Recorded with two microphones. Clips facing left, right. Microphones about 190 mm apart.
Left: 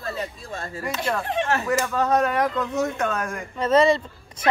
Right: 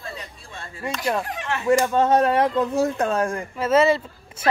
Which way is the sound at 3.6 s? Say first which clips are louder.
Even; 5° right (ahead or behind).